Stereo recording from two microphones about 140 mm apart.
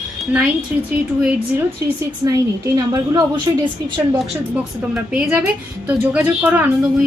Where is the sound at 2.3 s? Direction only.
25° right (ahead or behind).